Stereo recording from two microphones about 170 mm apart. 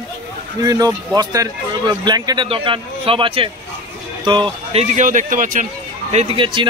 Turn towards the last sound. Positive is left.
turn(degrees=-30)  # may be behind; listen again after turning